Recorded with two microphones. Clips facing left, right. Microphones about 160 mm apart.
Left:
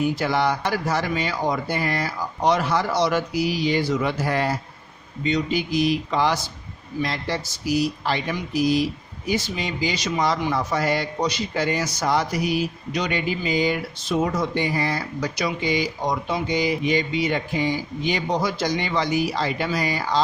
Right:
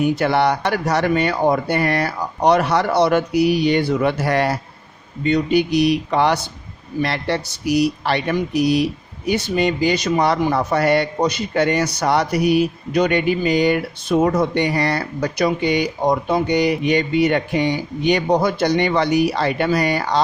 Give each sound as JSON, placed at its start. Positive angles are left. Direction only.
{"t": 0.0, "sound": "speech", "side_deg": -65}
{"t": 5.2, "sound": "speech", "side_deg": -60}